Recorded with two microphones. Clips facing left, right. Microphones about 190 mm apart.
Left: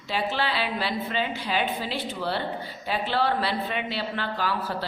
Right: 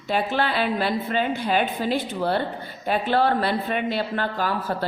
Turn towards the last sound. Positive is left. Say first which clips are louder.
# right 4 dB
turn(degrees=-50)  # may be behind; listen again after turning